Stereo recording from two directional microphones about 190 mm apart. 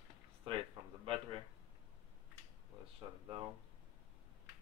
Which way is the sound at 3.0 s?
25° right (ahead or behind).